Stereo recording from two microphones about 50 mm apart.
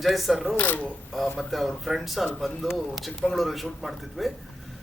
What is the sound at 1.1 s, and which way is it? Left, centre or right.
A man's voice, centre.